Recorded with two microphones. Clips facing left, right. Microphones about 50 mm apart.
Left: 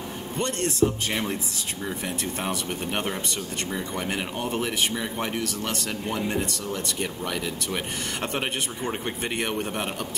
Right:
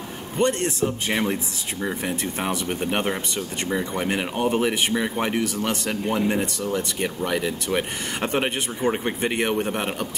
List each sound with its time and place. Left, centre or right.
0.4 s speech: centre